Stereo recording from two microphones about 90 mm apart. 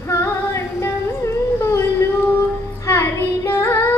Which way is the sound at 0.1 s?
30° left (ahead or behind).